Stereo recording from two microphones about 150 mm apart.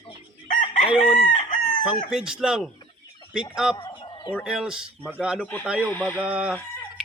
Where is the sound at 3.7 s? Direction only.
30° left (ahead or behind).